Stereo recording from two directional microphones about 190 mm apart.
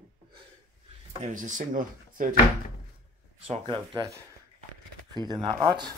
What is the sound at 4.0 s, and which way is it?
Speech, 15° right (ahead or behind).